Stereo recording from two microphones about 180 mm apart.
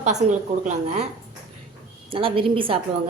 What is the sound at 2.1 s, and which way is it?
Speech, 30° right (ahead or behind).